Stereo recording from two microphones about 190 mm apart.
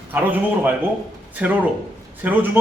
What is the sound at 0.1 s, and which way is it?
A man's voice, 10° right (ahead or behind).